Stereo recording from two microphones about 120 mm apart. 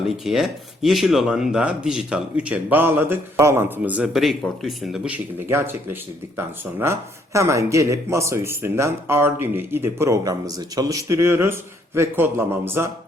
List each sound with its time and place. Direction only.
0.0 s speech: 5° right (ahead or behind)
5.5 s speech: 20° right (ahead or behind)